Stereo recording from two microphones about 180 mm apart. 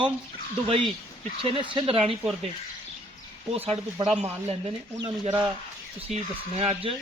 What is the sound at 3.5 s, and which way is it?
Speech, 30° right (ahead or behind).